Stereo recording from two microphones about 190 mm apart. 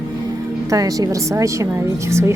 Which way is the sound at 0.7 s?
20° right (ahead or behind).